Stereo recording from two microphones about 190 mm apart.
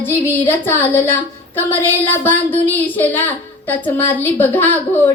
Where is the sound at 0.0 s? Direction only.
10° left (ahead or behind).